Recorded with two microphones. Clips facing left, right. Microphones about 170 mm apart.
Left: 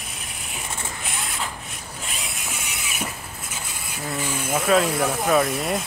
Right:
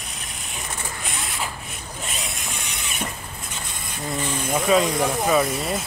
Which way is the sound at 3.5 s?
10° left (ahead or behind).